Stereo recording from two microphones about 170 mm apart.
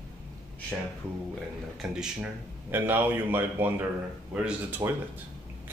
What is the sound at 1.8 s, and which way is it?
Speech, 5° right (ahead or behind).